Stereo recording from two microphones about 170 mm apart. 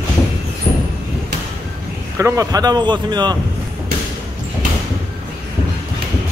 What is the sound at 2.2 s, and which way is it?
Speech, 20° right (ahead or behind).